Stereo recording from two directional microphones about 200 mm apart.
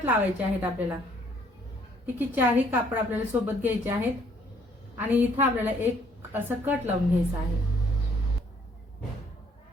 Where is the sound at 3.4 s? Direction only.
10° right (ahead or behind).